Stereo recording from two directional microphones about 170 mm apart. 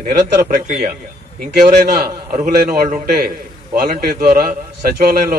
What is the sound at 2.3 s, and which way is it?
Speech, 50° right (ahead or behind).